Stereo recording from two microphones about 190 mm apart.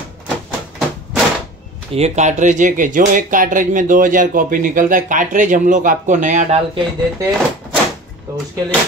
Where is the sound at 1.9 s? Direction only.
35° right (ahead or behind).